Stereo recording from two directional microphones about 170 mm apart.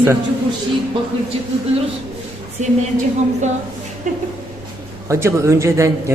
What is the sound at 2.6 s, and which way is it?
Speech, 45° right (ahead or behind).